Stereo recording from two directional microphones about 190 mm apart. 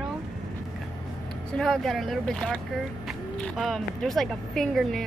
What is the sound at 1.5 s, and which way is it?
Speech, centre (ahead or behind).